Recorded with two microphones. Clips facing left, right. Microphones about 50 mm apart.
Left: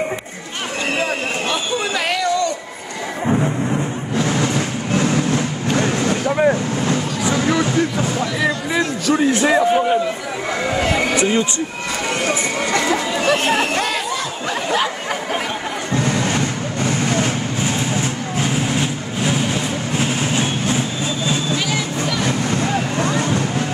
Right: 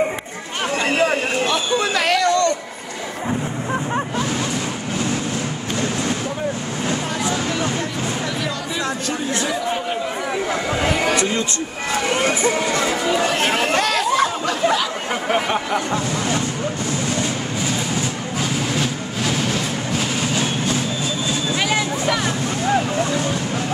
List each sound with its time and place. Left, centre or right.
1.5 s a sound: centre
6.2 s vehicle: left
9.0 s a sound: left
17.1 s vehicle: left
18.4 s vehicle: left
20.0 s train: left